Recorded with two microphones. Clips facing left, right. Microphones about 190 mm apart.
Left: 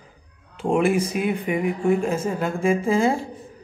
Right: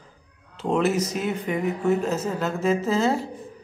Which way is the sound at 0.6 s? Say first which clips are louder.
Left 2 dB; 10° left (ahead or behind).